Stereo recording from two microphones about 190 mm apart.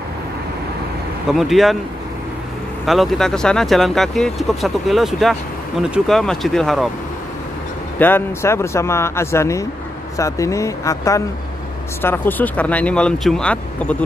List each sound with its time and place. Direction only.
1.3 s speech: centre (ahead or behind)
2.8 s speech: centre (ahead or behind)
8.0 s speech: 10° left (ahead or behind)